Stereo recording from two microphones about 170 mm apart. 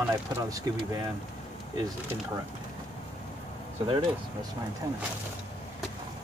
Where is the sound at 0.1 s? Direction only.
20° right (ahead or behind).